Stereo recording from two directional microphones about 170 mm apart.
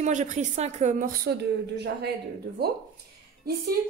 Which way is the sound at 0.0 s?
45° right (ahead or behind).